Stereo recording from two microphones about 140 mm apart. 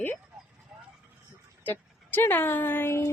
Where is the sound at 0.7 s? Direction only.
5° right (ahead or behind).